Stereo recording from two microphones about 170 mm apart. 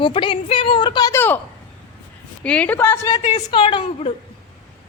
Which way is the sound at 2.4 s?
5° left (ahead or behind).